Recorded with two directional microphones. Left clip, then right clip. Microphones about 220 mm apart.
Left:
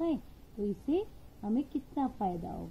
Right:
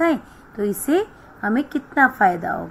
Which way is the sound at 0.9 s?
30° right (ahead or behind).